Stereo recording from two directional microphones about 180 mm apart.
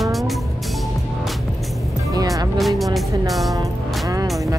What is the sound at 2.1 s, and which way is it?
Speech, 20° right (ahead or behind).